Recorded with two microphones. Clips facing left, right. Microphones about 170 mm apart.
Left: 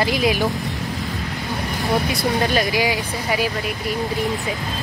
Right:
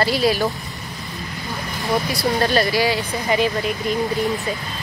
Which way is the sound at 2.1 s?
15° left (ahead or behind).